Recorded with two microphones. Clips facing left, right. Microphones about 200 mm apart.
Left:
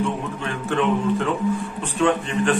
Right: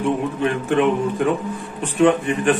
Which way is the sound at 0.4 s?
15° right (ahead or behind).